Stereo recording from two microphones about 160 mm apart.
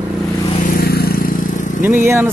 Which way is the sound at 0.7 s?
70° left (ahead or behind).